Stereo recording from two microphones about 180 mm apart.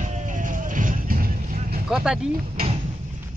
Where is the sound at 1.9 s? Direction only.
Centre (ahead or behind).